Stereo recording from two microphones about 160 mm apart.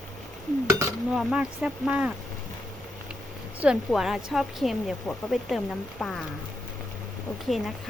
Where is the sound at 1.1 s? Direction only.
5° right (ahead or behind).